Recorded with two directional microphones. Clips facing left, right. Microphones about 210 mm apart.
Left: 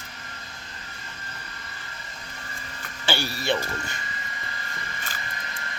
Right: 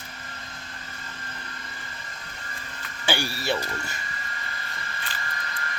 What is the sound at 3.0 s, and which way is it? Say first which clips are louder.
Speech: even; 15° right (ahead or behind).